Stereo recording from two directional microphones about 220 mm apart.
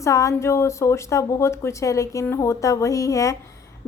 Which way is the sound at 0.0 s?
15° left (ahead or behind).